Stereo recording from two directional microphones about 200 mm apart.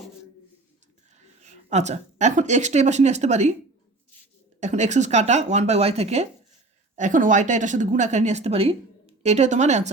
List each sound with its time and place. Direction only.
1.4 s a woman's voice: 35° right (ahead or behind)
4.6 s speech: 35° right (ahead or behind)